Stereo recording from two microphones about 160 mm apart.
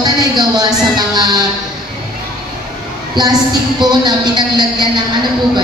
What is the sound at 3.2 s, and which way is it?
A man's voice, 25° right (ahead or behind).